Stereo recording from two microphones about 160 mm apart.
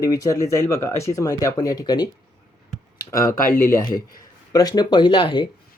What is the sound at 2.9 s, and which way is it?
Computer keyboard, 20° left (ahead or behind).